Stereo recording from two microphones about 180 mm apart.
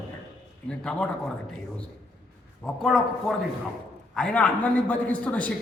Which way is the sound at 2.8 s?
Centre (ahead or behind).